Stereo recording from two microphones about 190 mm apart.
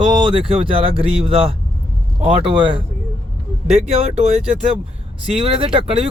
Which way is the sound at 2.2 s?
30° right (ahead or behind).